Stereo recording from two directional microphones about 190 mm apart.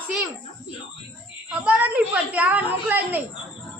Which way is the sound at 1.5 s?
10° right (ahead or behind).